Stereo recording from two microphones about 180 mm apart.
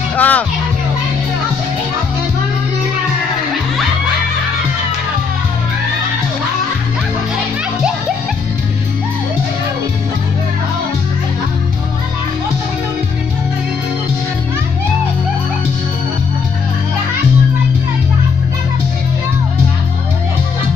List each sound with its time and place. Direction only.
0.1 s music: 10° left (ahead or behind)